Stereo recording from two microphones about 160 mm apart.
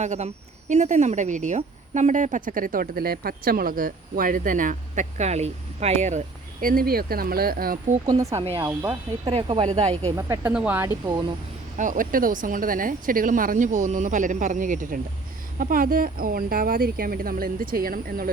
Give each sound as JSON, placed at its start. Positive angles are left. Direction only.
{"t": 0.0, "sound": "a woman's voice", "side_deg": -45}
{"t": 8.0, "sound": "speech", "side_deg": -20}
{"t": 8.6, "sound": "speech", "side_deg": -15}
{"t": 9.6, "sound": "speech", "side_deg": -40}
{"t": 10.2, "sound": "speech", "side_deg": -20}
{"t": 10.5, "sound": "speech", "side_deg": -10}
{"t": 11.8, "sound": "a woman's voice", "side_deg": -55}